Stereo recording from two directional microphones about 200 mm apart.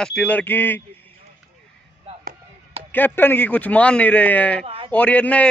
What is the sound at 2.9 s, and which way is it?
A man's voice, 10° left (ahead or behind).